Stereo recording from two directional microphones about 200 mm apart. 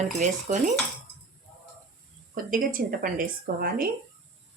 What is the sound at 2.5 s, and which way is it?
A woman's voice, 45° right (ahead or behind).